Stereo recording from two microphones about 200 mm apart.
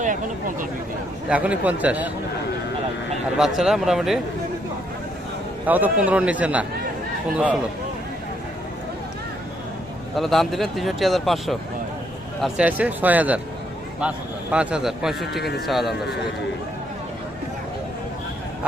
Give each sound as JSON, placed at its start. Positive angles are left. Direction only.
{"t": 1.3, "sound": "a man's voice", "side_deg": -5}
{"t": 3.3, "sound": "speech", "side_deg": 0}
{"t": 5.6, "sound": "a man's voice", "side_deg": -10}
{"t": 10.2, "sound": "a man's voice", "side_deg": 0}
{"t": 14.5, "sound": "speech", "side_deg": -5}
{"t": 15.4, "sound": "speech", "side_deg": 55}
{"t": 15.6, "sound": "speech", "side_deg": 0}